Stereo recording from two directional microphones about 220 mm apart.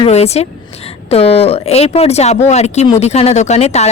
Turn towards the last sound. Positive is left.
turn(degrees=30)  # may be behind; listen again after turning